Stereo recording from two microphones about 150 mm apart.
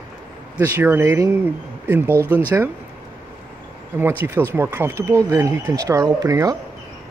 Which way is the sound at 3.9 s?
15° right (ahead or behind).